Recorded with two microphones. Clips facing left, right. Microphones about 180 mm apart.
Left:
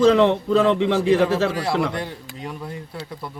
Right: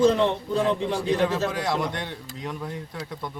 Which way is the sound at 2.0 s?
10° left (ahead or behind).